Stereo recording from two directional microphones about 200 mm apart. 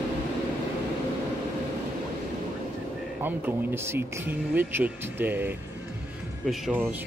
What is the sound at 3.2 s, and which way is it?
Speech, 10° right (ahead or behind).